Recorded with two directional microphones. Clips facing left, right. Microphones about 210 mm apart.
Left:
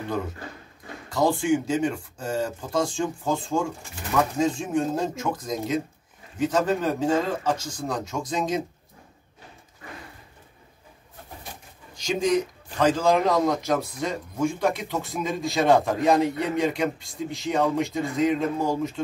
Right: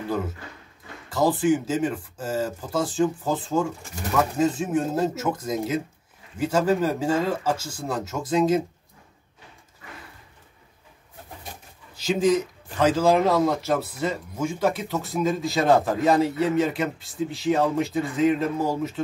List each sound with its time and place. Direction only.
1.1 s a man's voice: 5° right (ahead or behind)
11.9 s a man's voice: 5° right (ahead or behind)